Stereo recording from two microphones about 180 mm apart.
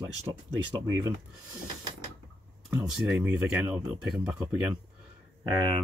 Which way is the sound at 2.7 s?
10° right (ahead or behind).